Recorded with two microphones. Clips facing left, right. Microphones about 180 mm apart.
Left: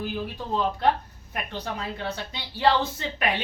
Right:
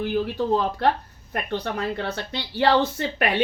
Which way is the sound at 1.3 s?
60° right (ahead or behind).